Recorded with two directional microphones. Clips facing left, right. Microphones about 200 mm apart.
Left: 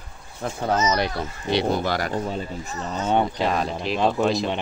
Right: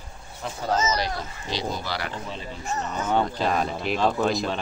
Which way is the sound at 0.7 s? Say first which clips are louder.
Left 2 dB; 55° left (ahead or behind).